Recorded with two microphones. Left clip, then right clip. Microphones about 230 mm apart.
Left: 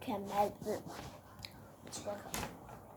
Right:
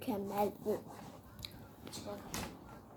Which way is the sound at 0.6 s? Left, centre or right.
Left.